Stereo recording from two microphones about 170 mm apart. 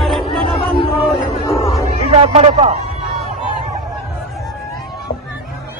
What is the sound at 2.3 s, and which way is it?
Speech, 40° right (ahead or behind).